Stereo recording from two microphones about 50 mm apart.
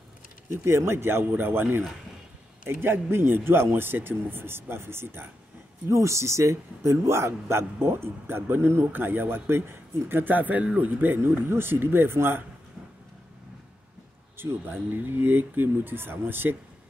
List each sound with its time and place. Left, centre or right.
0.5 s speech: right
5.9 s a man's voice: right
8.9 s speech: right
11.0 s speech: right
15.0 s speech: right